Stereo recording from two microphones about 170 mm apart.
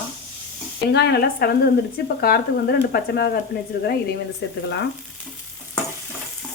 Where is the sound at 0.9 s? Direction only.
80° left.